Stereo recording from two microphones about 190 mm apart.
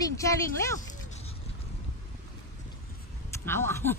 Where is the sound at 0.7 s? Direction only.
35° left (ahead or behind).